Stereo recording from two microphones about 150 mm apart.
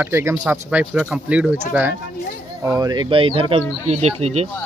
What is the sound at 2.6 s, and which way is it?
Speech, 25° right (ahead or behind).